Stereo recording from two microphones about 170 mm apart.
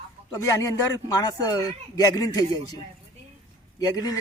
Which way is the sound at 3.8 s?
20° left (ahead or behind).